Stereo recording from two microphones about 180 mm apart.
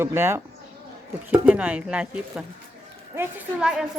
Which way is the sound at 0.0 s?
15° right (ahead or behind).